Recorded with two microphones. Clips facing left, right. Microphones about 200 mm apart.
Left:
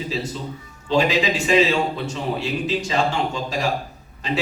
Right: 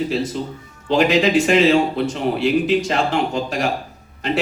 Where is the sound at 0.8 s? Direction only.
55° right (ahead or behind).